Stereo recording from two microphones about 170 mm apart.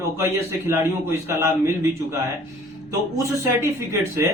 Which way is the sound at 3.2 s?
15° right (ahead or behind).